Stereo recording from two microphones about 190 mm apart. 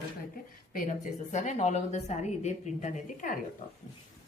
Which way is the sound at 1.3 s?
40° left (ahead or behind).